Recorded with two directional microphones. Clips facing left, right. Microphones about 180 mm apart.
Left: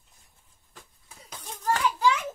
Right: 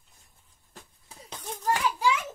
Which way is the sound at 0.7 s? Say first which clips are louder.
Right 2 dB; 30° right (ahead or behind).